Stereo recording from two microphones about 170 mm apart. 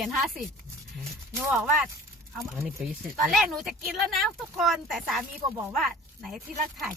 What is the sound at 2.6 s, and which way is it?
Speech, 15° right (ahead or behind).